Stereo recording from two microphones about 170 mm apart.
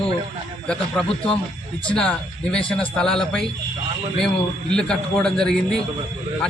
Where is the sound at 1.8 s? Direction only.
5° left (ahead or behind).